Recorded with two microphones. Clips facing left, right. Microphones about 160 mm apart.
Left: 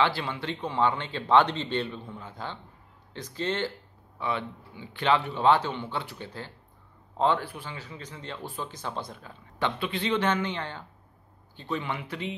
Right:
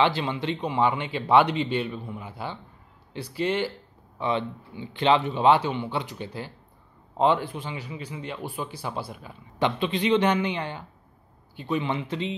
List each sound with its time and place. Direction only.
0.0 s speech: 20° right (ahead or behind)
4.2 s speech: 25° right (ahead or behind)